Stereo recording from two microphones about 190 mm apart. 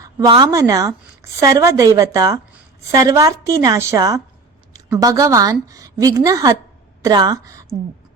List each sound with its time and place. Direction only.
0.0 s a woman's voice: 20° right (ahead or behind)